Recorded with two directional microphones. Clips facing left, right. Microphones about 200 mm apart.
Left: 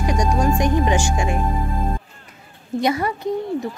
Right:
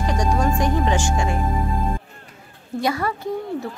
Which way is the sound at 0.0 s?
15° left (ahead or behind).